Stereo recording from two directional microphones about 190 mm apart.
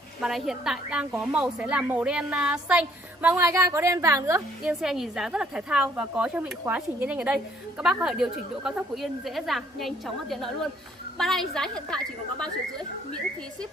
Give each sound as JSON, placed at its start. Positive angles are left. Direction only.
{"t": 0.2, "sound": "speech", "side_deg": 0}
{"t": 4.6, "sound": "speech", "side_deg": 0}